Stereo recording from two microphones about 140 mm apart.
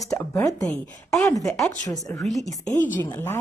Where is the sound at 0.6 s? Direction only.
5° left (ahead or behind).